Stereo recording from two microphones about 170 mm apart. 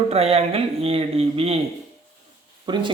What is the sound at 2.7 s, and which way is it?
Speech, 25° right (ahead or behind).